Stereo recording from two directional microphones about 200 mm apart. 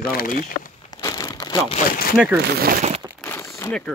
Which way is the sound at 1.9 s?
45° left (ahead or behind).